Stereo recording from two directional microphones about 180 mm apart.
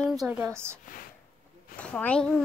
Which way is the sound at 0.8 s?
50° left (ahead or behind).